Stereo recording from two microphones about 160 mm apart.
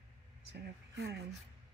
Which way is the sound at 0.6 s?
90° right.